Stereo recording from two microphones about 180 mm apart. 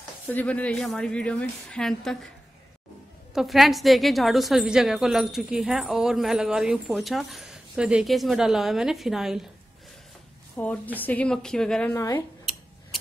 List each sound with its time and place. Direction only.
0.3 s a woman's voice: 10° left (ahead or behind)
3.3 s a woman's voice: centre (ahead or behind)
10.5 s a woman's voice: 10° left (ahead or behind)
11.9 s speech: 15° left (ahead or behind)